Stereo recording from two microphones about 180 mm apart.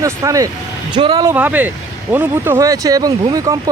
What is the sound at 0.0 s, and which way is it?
Speech, 20° right (ahead or behind).